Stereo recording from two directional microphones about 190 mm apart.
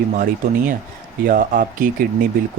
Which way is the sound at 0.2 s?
45° right (ahead or behind).